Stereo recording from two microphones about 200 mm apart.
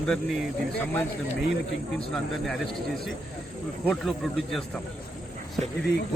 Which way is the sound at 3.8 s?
5° left (ahead or behind).